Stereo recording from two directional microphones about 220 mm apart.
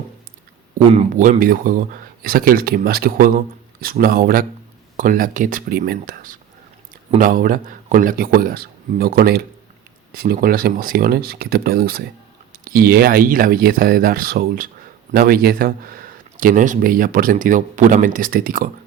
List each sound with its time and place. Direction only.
0.9 s speech: 30° right (ahead or behind)